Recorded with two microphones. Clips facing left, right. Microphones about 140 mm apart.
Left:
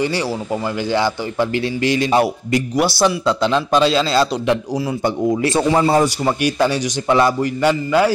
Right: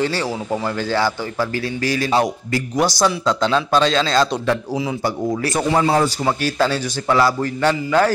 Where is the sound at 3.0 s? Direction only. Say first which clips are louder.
Left 2 dB; 10° left (ahead or behind).